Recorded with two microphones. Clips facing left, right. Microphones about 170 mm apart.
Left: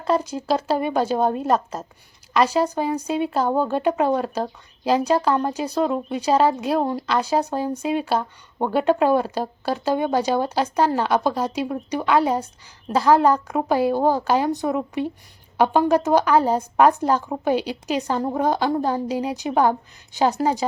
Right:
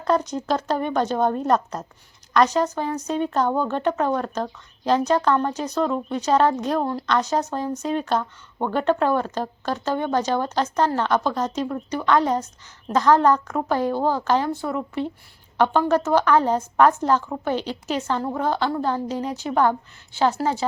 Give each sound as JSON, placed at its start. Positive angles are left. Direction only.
{"t": 0.0, "sound": "speech", "side_deg": 10}